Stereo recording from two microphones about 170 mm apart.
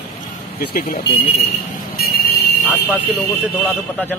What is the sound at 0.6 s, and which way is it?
Speech, 65° left (ahead or behind).